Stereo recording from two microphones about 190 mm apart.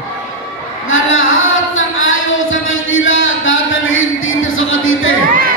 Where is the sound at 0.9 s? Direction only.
90° left.